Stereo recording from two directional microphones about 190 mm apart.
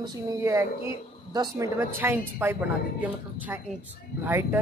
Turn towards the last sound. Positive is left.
turn(degrees=-10)  # may be behind; listen again after turning